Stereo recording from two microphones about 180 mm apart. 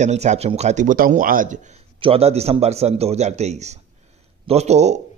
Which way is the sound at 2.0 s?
35° right (ahead or behind).